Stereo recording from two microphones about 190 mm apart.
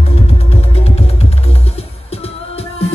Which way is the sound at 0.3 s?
30° left (ahead or behind).